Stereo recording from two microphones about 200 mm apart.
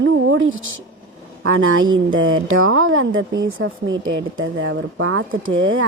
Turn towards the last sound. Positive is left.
turn(degrees=-85)